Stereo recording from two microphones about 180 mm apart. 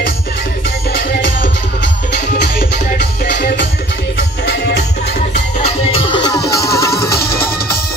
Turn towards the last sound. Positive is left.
turn(degrees=15)  # may be behind; listen again after turning